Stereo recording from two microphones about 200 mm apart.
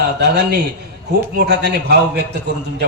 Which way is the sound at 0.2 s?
55° right (ahead or behind).